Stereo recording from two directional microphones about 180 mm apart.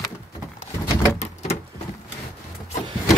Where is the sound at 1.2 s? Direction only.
35° left (ahead or behind).